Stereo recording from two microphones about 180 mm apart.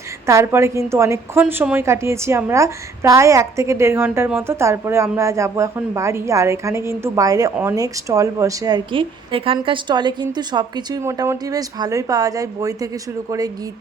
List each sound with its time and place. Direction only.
0.3 s a woman's voice: 15° right (ahead or behind)